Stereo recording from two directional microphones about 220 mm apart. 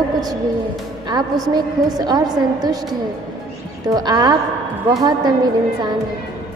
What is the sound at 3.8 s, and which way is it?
A woman's voice, 15° right (ahead or behind).